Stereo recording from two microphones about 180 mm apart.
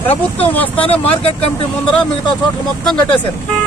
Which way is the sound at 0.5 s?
10° left (ahead or behind).